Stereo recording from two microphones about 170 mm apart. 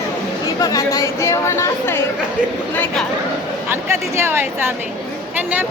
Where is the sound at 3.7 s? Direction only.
15° right (ahead or behind).